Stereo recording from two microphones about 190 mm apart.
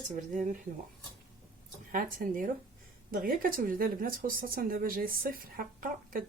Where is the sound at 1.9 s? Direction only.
45° right (ahead or behind).